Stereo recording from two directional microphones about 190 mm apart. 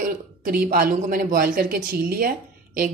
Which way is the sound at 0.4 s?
50° right (ahead or behind).